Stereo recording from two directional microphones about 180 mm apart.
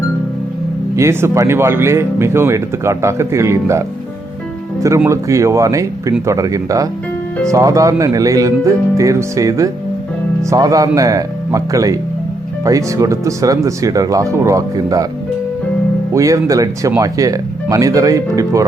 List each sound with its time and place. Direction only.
0.9 s speech: 15° right (ahead or behind)
5.0 s speech: 15° right (ahead or behind)
16.1 s speech: 20° right (ahead or behind)